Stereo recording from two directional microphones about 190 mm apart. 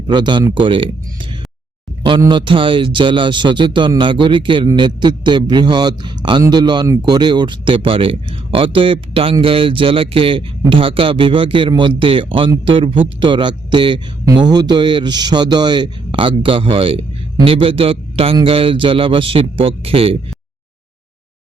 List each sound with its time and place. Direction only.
0.1 s speech: 25° right (ahead or behind)